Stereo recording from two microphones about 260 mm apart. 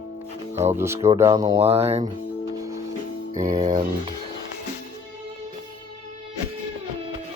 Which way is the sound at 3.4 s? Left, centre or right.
Right.